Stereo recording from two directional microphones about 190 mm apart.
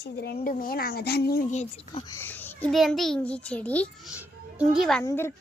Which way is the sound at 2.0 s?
10° left (ahead or behind).